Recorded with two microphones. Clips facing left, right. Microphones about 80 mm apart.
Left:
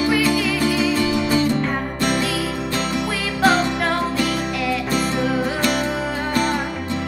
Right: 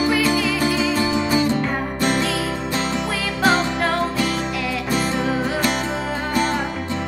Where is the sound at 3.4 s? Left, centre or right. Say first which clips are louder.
Left 1 dB; centre.